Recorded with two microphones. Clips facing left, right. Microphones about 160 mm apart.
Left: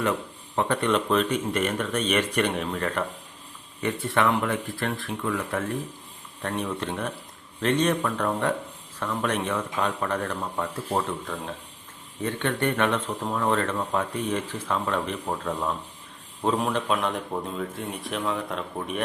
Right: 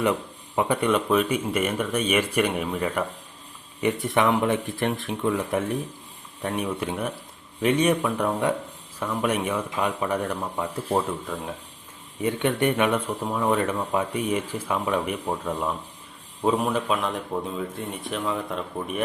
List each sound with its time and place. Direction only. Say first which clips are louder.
0.0 s a man's voice: right 2 dB; 15° right (ahead or behind)